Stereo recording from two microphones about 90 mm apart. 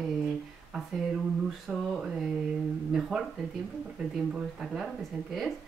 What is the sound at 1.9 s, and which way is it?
Speech, centre (ahead or behind).